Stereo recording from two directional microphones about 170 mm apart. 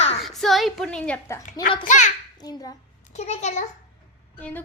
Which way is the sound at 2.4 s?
20° left (ahead or behind).